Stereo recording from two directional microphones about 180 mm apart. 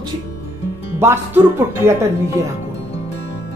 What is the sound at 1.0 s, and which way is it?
Speech, 15° right (ahead or behind).